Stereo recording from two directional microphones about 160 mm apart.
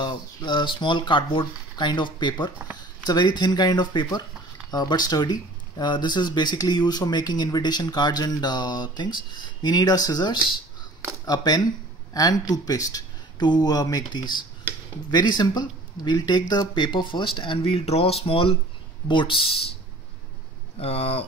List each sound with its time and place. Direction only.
0.0 s speech: 30° left (ahead or behind)
20.7 s speech: 40° left (ahead or behind)